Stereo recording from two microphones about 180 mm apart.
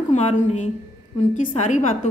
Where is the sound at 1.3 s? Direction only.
40° left (ahead or behind).